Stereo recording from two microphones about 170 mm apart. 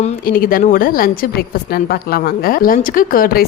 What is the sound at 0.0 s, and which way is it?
A woman's voice, 55° left (ahead or behind).